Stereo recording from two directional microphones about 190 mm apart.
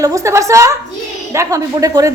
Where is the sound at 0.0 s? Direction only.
15° right (ahead or behind).